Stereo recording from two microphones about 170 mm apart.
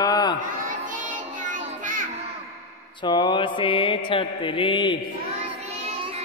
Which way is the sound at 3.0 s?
25° left (ahead or behind).